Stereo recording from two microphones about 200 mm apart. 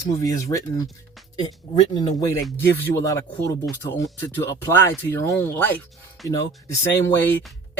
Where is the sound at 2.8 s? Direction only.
15° left (ahead or behind).